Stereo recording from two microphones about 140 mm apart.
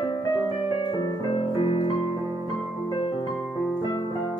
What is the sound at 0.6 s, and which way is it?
Music, 40° left (ahead or behind).